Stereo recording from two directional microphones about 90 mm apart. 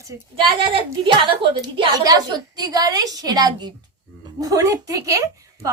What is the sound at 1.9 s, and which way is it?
A woman's voice, 45° right (ahead or behind).